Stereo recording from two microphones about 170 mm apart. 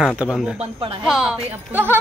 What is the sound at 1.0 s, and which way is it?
Speech, 5° right (ahead or behind).